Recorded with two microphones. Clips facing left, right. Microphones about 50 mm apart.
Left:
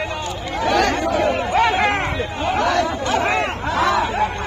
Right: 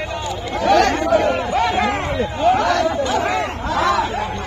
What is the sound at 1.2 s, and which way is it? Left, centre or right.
Chatter, centre.